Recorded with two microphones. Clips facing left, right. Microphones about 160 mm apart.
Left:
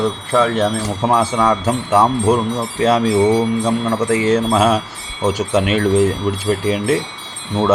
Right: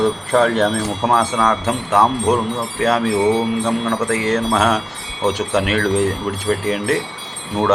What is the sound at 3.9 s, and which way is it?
Speech, 10° left (ahead or behind).